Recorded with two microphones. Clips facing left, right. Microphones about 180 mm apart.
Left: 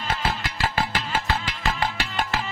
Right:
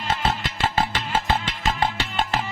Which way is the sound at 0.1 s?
25° right (ahead or behind).